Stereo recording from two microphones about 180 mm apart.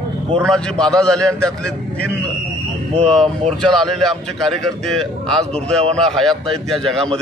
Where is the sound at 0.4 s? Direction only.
5° left (ahead or behind).